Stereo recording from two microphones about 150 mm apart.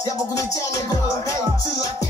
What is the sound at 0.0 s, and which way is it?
Music, 20° left (ahead or behind).